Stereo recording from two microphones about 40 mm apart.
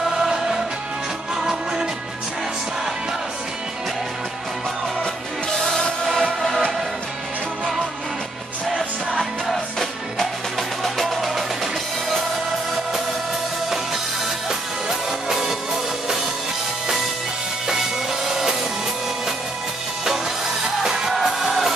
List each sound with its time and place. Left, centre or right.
0.1 s music: centre
6.0 s music: centre
9.5 s music: centre
14.5 s music: centre
20.8 s music: centre
21.1 s music: centre